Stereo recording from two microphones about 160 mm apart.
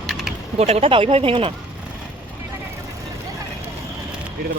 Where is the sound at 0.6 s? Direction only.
40° right (ahead or behind).